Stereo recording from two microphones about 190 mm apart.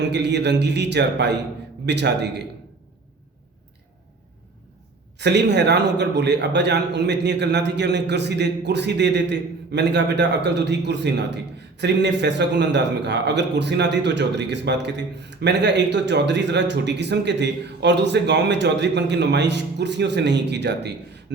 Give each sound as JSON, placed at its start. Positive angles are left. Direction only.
{"t": 0.0, "sound": "a man's voice", "side_deg": -65}
{"t": 5.1, "sound": "a man's voice", "side_deg": -65}